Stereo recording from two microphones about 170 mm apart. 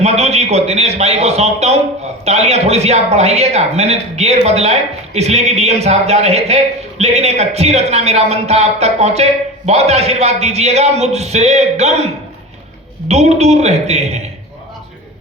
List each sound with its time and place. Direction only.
0.0 s a man's voice: 40° right (ahead or behind)
13.1 s a man's voice: 40° right (ahead or behind)